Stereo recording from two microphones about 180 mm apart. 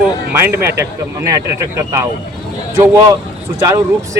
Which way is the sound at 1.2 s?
20° right (ahead or behind).